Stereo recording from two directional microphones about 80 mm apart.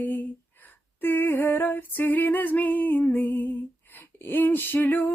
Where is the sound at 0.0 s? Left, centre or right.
Left.